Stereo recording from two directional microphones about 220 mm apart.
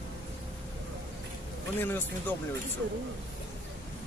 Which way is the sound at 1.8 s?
10° left (ahead or behind).